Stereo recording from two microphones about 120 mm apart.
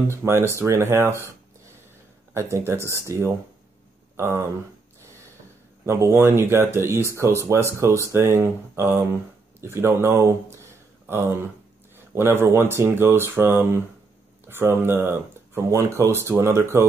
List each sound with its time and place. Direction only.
0.1 s speech: 20° right (ahead or behind)
2.3 s speech: 20° right (ahead or behind)
5.9 s speech: 20° right (ahead or behind)